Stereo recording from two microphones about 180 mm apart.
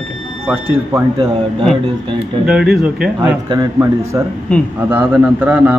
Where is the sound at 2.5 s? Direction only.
5° right (ahead or behind).